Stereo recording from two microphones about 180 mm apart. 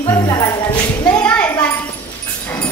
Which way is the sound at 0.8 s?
20° left (ahead or behind).